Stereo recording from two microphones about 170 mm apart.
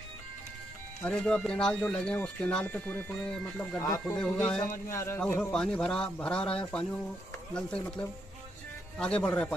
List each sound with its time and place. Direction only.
1.0 s speech: 5° left (ahead or behind)